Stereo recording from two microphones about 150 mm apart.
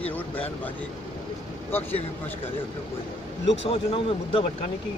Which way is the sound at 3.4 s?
40° left (ahead or behind).